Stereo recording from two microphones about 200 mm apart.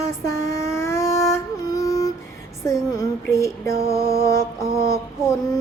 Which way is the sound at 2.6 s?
15° left (ahead or behind).